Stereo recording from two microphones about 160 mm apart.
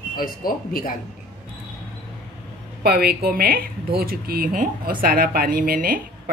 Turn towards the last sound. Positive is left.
turn(degrees=-65)  # may be behind; listen again after turning